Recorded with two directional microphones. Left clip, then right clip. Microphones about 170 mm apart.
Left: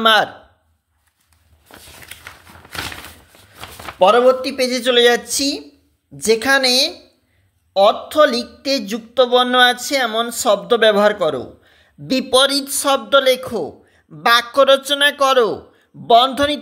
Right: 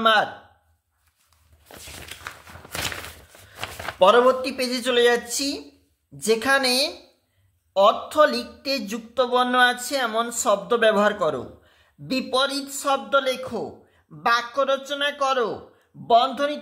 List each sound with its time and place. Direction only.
0.0 s speech: 35° left (ahead or behind)
4.0 s speech: 20° left (ahead or behind); by 16.5 s 40° left (ahead or behind)